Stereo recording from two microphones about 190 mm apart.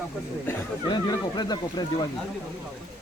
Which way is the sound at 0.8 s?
20° left (ahead or behind).